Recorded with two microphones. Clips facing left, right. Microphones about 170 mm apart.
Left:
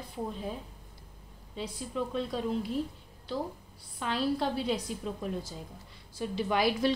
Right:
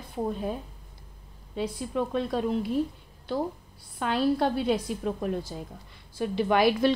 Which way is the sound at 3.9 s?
55° right (ahead or behind).